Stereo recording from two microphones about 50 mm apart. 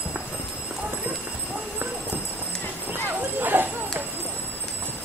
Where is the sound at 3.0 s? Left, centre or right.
Right.